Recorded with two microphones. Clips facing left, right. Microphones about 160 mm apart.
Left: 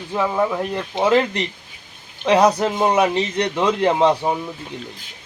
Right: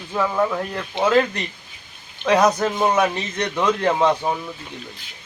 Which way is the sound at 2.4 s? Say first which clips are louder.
Left 2 dB; 30° left (ahead or behind).